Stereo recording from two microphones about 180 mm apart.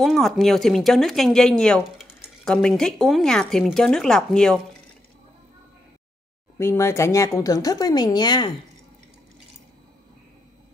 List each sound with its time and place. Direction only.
0.0 s speech: centre (ahead or behind)
6.6 s a woman's voice: 15° left (ahead or behind)